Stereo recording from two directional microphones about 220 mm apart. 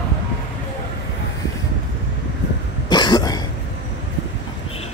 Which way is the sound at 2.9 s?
20° left (ahead or behind).